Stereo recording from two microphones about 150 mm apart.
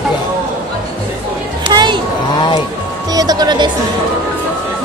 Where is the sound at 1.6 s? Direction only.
30° right (ahead or behind).